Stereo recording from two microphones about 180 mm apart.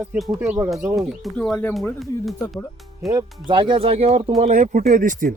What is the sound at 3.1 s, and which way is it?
Speech, 20° right (ahead or behind).